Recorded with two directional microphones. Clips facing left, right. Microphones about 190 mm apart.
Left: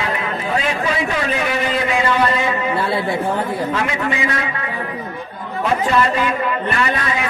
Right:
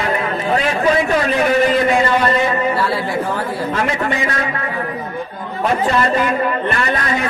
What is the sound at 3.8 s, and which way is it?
Speech, 40° right (ahead or behind).